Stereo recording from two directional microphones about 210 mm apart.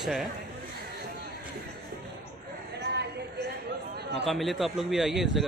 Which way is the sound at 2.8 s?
50° right (ahead or behind).